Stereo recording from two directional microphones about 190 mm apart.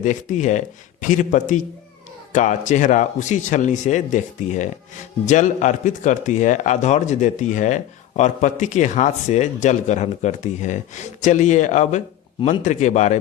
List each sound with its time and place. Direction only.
0.0 s speech: 40° left (ahead or behind)